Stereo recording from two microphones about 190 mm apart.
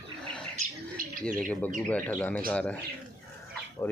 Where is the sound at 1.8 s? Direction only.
5° left (ahead or behind).